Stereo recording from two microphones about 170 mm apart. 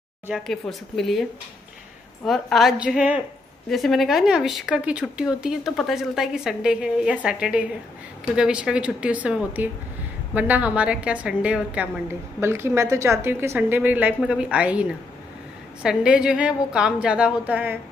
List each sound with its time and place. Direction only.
0.3 s speech: centre (ahead or behind)
2.2 s a woman's voice: centre (ahead or behind)